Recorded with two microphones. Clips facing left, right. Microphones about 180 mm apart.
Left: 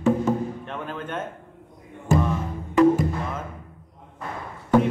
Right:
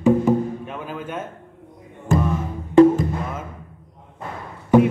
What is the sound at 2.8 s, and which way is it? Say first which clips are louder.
Music: right 5 dB; 30° right (ahead or behind).